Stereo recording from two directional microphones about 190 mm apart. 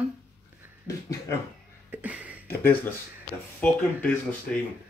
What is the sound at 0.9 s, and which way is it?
Speech, 15° left (ahead or behind).